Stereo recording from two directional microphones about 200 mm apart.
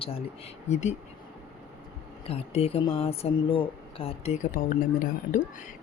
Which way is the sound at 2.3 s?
30° left (ahead or behind).